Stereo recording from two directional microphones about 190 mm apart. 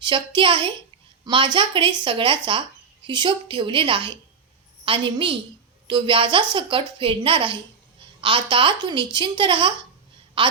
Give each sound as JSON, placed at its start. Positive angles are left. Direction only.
{"t": 0.0, "sound": "a woman's voice", "side_deg": -25}